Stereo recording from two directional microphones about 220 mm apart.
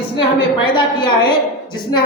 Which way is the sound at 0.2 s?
20° left (ahead or behind).